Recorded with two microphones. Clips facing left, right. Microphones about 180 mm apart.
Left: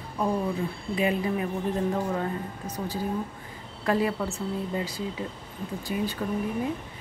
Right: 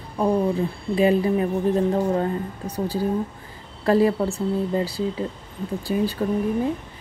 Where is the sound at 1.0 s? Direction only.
35° right (ahead or behind).